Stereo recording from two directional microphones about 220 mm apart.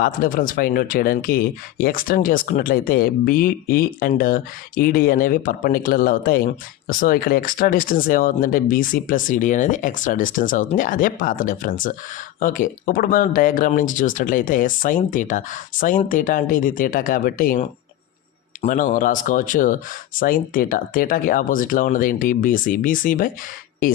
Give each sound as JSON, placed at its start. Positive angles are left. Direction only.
{"t": 0.0, "sound": "speech", "side_deg": 40}